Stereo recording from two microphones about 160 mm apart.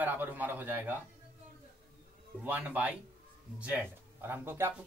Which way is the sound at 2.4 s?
10° right (ahead or behind).